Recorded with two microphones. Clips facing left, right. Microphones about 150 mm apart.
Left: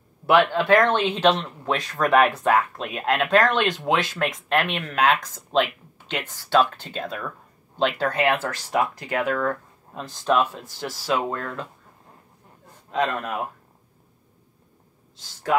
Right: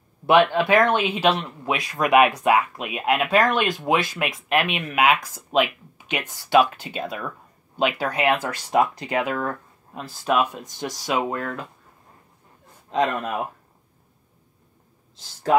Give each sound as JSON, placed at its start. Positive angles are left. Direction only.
{"t": 0.3, "sound": "speech", "side_deg": -15}
{"t": 12.9, "sound": "speech", "side_deg": -20}